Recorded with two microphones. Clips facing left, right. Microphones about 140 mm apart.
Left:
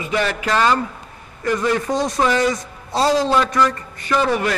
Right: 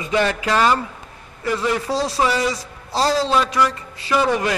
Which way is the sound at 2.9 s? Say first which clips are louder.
Left 2 dB; 20° left (ahead or behind).